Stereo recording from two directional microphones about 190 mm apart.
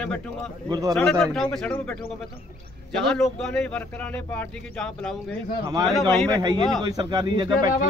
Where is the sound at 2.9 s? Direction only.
Centre (ahead or behind).